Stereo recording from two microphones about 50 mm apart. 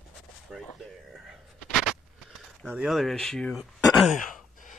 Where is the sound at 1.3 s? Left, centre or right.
Centre.